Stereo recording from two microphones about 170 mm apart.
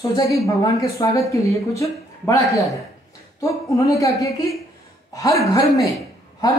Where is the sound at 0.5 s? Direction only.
20° left (ahead or behind).